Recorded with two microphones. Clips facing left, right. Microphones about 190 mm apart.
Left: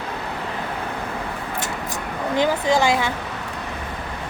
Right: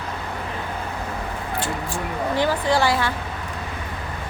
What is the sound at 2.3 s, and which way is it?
Speech, 15° left (ahead or behind).